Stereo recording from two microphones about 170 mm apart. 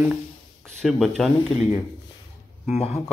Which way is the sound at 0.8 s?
Centre (ahead or behind).